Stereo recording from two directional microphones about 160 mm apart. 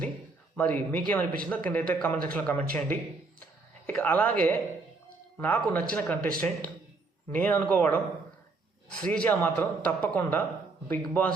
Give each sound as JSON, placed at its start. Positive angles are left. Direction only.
{"t": 0.5, "sound": "a man's voice", "side_deg": 10}